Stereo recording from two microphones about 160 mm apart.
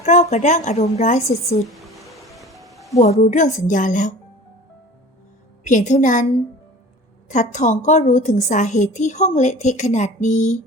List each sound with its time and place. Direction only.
0.0 s a woman's voice: 50° left (ahead or behind)
1.7 s music: centre (ahead or behind)
3.0 s a woman's voice: 45° left (ahead or behind)
5.6 s a woman's voice: 50° left (ahead or behind)
7.3 s a woman's voice: 50° left (ahead or behind)